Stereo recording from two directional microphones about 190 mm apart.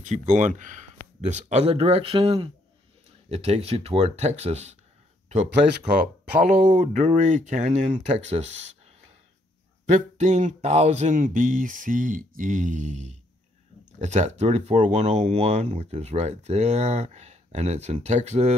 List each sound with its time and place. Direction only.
0.0 s speech: 40° right (ahead or behind)
9.8 s speech: 40° right (ahead or behind)